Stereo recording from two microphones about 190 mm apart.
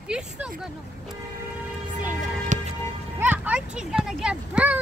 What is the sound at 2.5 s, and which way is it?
Vehicle, 40° right (ahead or behind).